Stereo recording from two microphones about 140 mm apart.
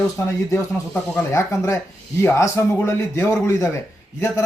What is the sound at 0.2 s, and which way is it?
Speech, 20° left (ahead or behind).